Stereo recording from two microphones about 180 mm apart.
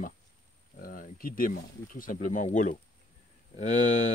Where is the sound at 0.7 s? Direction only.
50° left (ahead or behind).